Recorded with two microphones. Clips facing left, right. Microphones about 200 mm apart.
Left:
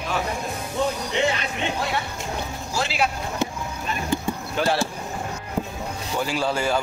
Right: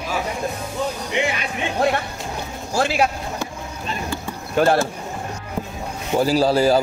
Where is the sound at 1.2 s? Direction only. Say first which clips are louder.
Even; 15° right (ahead or behind).